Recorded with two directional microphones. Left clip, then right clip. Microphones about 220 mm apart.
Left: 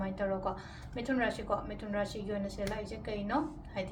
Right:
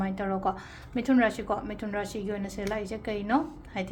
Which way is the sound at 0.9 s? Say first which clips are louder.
Right 8 dB; 50° right (ahead or behind).